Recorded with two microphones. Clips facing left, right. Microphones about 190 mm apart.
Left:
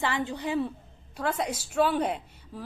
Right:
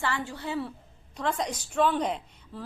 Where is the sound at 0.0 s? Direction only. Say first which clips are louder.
Left 3 dB; 15° left (ahead or behind).